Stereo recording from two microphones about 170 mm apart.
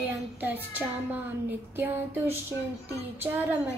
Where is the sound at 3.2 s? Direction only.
10° right (ahead or behind).